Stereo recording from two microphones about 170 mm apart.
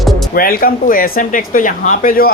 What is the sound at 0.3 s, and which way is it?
Speech, 60° left (ahead or behind).